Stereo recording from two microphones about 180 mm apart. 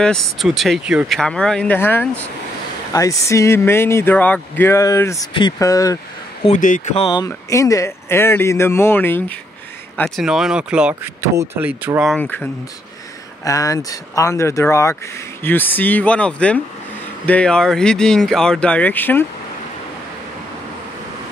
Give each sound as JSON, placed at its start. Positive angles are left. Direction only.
{"t": 0.0, "sound": "speech", "side_deg": 5}
{"t": 6.4, "sound": "speech", "side_deg": 45}
{"t": 7.0, "sound": "speech", "side_deg": 25}
{"t": 12.2, "sound": "speech", "side_deg": 10}